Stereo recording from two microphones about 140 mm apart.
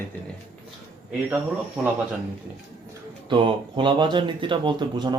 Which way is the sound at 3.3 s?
35° right (ahead or behind).